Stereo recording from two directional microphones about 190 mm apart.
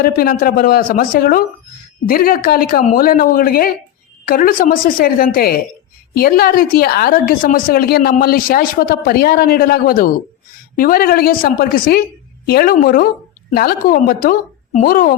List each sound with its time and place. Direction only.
0.0 s a woman's voice: 50° left (ahead or behind)